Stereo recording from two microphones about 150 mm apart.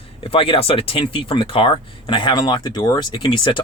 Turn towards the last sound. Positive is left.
turn(degrees=30)  # may be behind; listen again after turning